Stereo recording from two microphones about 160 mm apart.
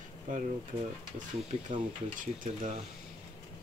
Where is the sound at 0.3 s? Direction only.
55° right (ahead or behind).